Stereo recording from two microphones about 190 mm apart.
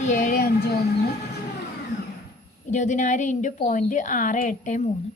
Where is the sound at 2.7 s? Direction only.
40° left (ahead or behind).